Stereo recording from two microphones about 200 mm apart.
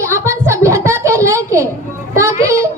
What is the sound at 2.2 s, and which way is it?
Music, 15° right (ahead or behind).